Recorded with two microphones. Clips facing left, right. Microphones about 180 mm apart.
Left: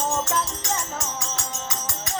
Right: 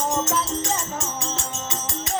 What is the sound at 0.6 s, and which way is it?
Music, 25° right (ahead or behind).